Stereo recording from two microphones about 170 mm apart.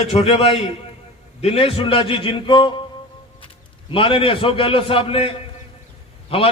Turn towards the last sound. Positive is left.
turn(degrees=35)  # may be behind; listen again after turning